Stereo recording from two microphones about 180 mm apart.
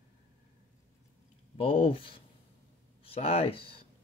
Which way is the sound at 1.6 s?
30° left (ahead or behind).